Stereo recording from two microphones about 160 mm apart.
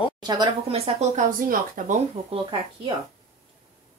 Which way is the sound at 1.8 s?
60° right (ahead or behind).